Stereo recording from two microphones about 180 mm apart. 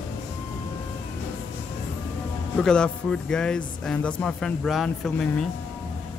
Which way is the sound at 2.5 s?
5° left (ahead or behind).